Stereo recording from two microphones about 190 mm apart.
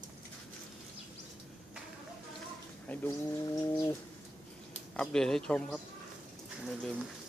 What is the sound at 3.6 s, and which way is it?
Bird, 15° left (ahead or behind).